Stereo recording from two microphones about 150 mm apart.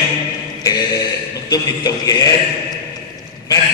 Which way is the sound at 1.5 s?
25° left (ahead or behind).